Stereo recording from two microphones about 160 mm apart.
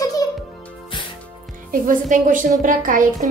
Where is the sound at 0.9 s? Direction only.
30° left (ahead or behind).